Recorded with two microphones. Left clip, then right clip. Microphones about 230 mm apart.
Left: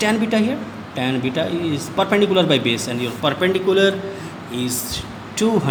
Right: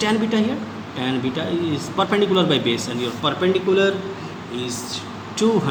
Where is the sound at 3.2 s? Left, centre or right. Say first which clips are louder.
Left 2 dB; left.